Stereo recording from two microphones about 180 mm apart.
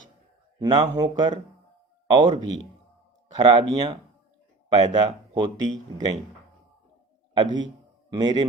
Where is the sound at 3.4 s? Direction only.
30° right (ahead or behind).